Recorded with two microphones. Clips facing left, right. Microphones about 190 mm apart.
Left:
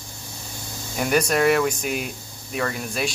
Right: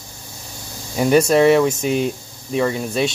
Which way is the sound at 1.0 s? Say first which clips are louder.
Right 7 dB; 25° right (ahead or behind).